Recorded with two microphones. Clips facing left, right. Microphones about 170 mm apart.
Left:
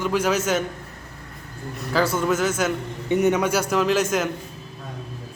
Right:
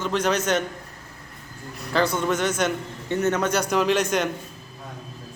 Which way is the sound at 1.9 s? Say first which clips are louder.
Left 1 dB; 5° left (ahead or behind).